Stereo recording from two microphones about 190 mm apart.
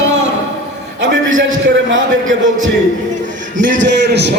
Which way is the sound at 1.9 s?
85° right.